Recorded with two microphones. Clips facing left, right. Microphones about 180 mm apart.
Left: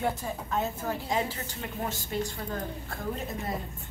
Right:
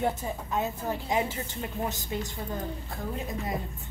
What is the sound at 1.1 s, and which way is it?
Speech, 20° right (ahead or behind).